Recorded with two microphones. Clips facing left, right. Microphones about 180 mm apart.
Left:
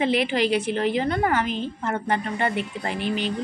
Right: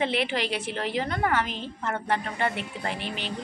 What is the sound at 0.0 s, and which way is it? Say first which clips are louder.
A woman's voice: left 5 dB; centre (ahead or behind).